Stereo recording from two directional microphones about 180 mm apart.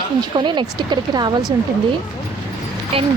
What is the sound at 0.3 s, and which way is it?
Speech, 25° right (ahead or behind).